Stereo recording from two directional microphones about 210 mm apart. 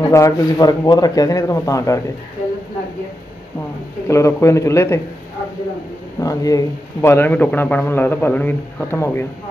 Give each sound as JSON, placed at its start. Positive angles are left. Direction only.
{"t": 0.1, "sound": "a man's voice", "side_deg": 15}
{"t": 4.1, "sound": "a man's voice", "side_deg": 15}
{"t": 6.2, "sound": "a man's voice", "side_deg": 15}